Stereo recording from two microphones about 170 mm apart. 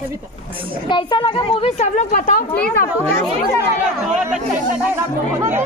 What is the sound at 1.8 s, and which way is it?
Speech, 45° left (ahead or behind).